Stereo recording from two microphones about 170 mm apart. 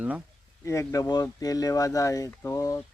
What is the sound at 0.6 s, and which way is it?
Speech, 15° left (ahead or behind).